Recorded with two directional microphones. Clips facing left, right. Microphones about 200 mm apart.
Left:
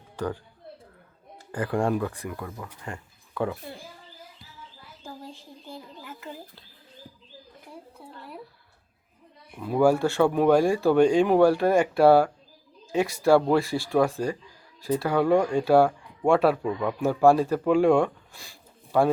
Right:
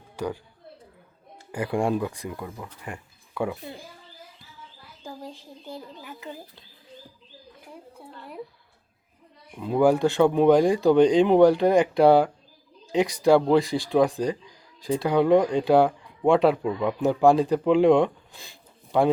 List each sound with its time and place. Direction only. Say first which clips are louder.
1.5 s speech: right 1 dB; 10° right (ahead or behind)
6.0 s speech: right 1 dB; 15° right (ahead or behind)
9.6 s speech: right 1 dB; 20° right (ahead or behind)